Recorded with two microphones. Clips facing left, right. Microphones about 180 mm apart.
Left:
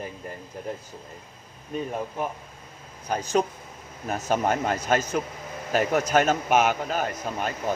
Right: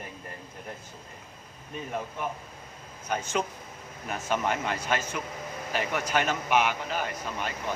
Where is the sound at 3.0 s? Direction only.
35° left (ahead or behind).